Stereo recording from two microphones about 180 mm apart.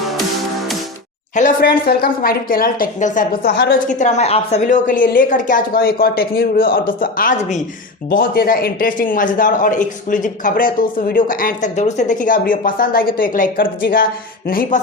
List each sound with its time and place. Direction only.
1.4 s a man's voice: 50° left (ahead or behind)
3.4 s a woman's voice: 70° left (ahead or behind)
3.8 s a man's voice: 45° left (ahead or behind)